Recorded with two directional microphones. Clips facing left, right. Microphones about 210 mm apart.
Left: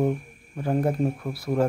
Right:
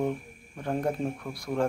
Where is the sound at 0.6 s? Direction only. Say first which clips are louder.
Left 5 dB; 5° left (ahead or behind).